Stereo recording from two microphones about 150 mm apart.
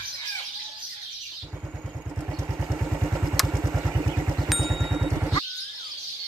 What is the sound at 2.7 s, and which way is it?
Vehicle, 10° right (ahead or behind).